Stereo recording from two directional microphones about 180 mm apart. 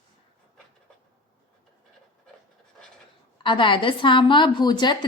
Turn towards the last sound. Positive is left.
turn(degrees=25)  # may be behind; listen again after turning